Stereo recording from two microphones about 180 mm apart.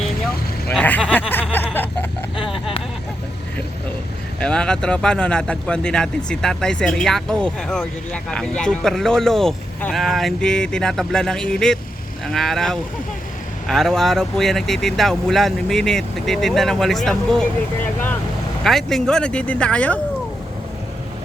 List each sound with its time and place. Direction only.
0.7 s speech: 10° left (ahead or behind)
1.5 s snicker: 10° left (ahead or behind)
2.5 s a sound: 30° left (ahead or behind)
4.4 s speech: 5° left (ahead or behind)
18.6 s speech: centre (ahead or behind)